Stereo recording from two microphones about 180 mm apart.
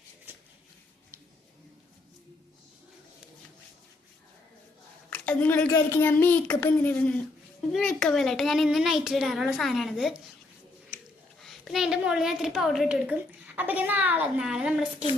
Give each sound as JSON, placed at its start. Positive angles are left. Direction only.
{"t": 5.1, "sound": "a child's voice", "side_deg": 5}
{"t": 11.3, "sound": "a woman's voice", "side_deg": 0}